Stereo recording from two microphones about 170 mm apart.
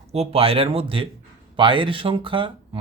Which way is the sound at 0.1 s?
35° right (ahead or behind).